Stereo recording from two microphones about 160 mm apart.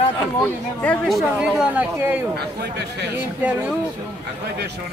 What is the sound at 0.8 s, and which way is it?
Speech, 5° left (ahead or behind).